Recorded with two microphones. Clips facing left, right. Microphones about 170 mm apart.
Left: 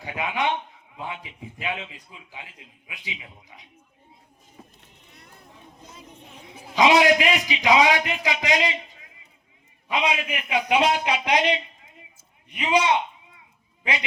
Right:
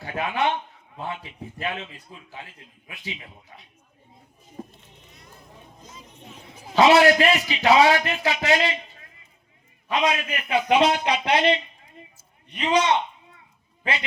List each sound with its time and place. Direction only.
0.0 s a man's voice: 15° left (ahead or behind)
4.8 s a sound: 60° left (ahead or behind)
6.7 s a man's voice: 15° left (ahead or behind)
9.9 s a man's voice: 10° left (ahead or behind)